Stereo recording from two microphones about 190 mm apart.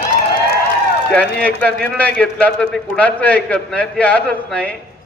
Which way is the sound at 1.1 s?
5° left (ahead or behind).